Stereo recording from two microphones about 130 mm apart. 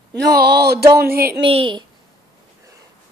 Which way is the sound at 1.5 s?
45° right (ahead or behind).